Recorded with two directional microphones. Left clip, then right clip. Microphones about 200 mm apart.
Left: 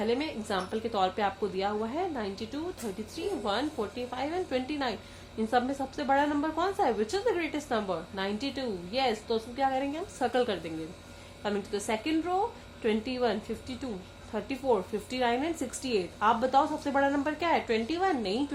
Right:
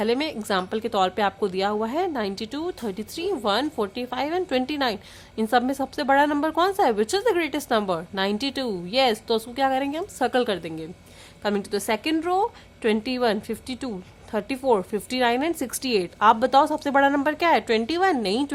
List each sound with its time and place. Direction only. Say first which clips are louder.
0.0 s a woman's voice: right 6 dB; 35° right (ahead or behind)